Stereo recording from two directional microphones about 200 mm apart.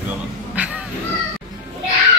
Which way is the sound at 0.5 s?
5° right (ahead or behind).